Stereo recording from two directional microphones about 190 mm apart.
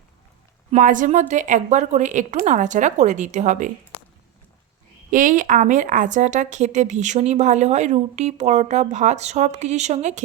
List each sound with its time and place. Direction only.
0.7 s a woman's voice: 40° right (ahead or behind)
5.1 s a woman's voice: 45° right (ahead or behind)